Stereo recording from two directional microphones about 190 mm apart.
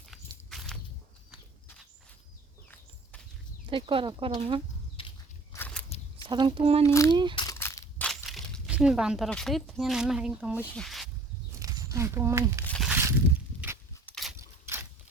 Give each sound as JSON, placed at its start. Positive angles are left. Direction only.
{"t": 3.7, "sound": "speech", "side_deg": -25}
{"t": 5.0, "sound": "walk", "side_deg": 30}
{"t": 5.5, "sound": "a sound", "side_deg": 10}
{"t": 6.2, "sound": "speech", "side_deg": -25}
{"t": 6.8, "sound": "a child's voice", "side_deg": 15}
{"t": 7.1, "sound": "speech", "side_deg": -25}
{"t": 7.3, "sound": "crushing", "side_deg": 15}
{"t": 10.8, "sound": "snake", "side_deg": 0}
{"t": 11.6, "sound": "speech", "side_deg": -15}
{"t": 12.6, "sound": "tearing", "side_deg": 5}
{"t": 12.9, "sound": "a sound", "side_deg": -15}
{"t": 14.0, "sound": "a sound", "side_deg": 5}
{"t": 14.3, "sound": "a sound", "side_deg": -15}